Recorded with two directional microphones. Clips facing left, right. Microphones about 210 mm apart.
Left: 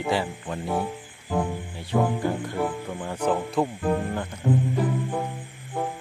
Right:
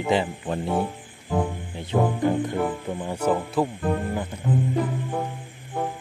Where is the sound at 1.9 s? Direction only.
20° right (ahead or behind).